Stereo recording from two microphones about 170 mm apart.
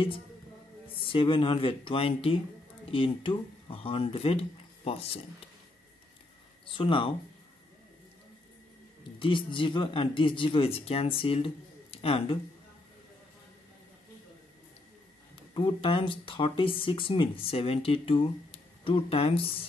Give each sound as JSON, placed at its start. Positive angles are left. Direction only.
{"t": 0.9, "sound": "speech", "side_deg": 30}
{"t": 6.6, "sound": "speech", "side_deg": 30}
{"t": 9.2, "sound": "speech", "side_deg": 30}
{"t": 15.5, "sound": "speech", "side_deg": 30}